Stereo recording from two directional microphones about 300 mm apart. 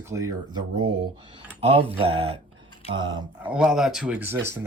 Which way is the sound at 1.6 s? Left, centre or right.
Centre.